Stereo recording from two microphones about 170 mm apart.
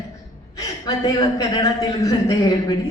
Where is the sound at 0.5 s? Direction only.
20° left (ahead or behind).